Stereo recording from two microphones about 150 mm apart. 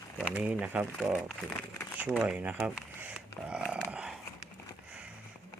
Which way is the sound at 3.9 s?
5° right (ahead or behind).